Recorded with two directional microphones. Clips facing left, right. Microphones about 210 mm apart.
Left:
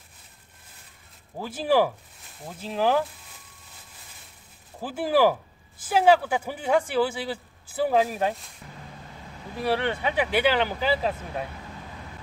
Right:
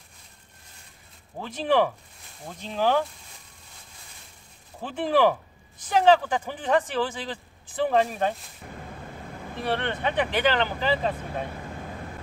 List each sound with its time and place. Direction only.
1.4 s speech: 5° left (ahead or behind)
4.8 s speech: 5° left (ahead or behind)
8.6 s vehicle: 55° right (ahead or behind)
9.6 s speech: 10° left (ahead or behind)